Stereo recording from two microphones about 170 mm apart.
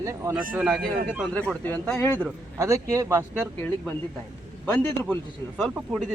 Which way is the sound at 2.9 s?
15° right (ahead or behind).